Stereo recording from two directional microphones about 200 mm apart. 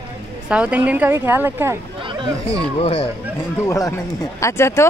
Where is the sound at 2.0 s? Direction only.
25° right (ahead or behind).